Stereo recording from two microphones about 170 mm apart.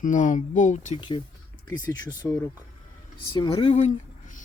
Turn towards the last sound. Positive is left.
turn(degrees=45)  # may be behind; listen again after turning